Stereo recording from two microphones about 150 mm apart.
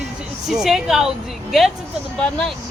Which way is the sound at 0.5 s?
5° right (ahead or behind).